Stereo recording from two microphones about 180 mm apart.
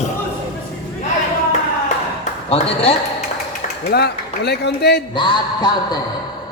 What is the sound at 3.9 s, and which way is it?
A man's voice, 65° left (ahead or behind).